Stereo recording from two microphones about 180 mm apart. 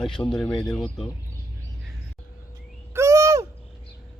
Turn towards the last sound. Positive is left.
turn(degrees=-15)  # may be behind; listen again after turning